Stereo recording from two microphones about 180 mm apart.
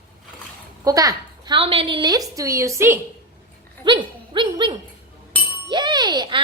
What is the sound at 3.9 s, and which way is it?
A child's voice, 25° right (ahead or behind).